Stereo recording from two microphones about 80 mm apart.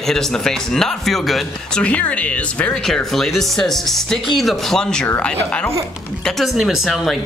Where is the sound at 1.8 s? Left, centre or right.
Centre.